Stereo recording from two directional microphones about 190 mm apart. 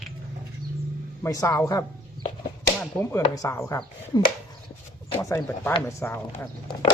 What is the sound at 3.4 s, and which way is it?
Speech, 15° left (ahead or behind).